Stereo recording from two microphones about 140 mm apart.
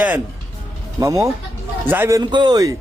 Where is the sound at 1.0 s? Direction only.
20° right (ahead or behind).